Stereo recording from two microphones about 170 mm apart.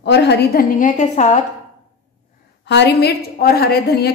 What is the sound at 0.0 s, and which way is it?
A woman's voice, 90° left.